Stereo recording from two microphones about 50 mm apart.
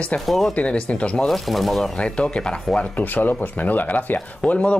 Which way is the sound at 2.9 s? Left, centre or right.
Left.